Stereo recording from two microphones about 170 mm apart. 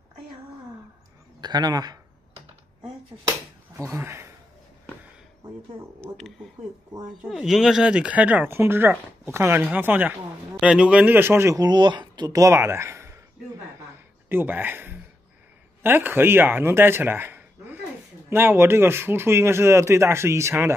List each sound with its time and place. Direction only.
1.4 s a man's voice: 25° right (ahead or behind)
3.7 s speech: 15° right (ahead or behind)
5.9 s speech: centre (ahead or behind); by 13.2 s 15° right (ahead or behind)
14.3 s speech: 10° right (ahead or behind)